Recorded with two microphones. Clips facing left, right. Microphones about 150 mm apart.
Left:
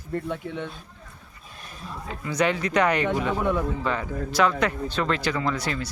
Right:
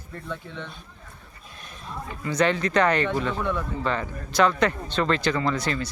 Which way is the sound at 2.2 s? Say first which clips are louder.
Right 1 dB; 10° left (ahead or behind).